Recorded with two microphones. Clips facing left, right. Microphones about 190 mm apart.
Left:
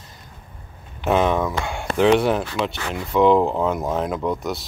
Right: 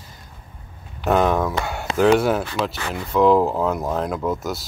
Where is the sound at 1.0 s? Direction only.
Centre (ahead or behind).